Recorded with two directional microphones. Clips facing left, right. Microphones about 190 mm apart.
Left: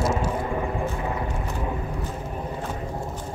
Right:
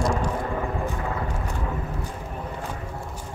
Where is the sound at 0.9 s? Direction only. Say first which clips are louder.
Left 1 dB; 20° left (ahead or behind).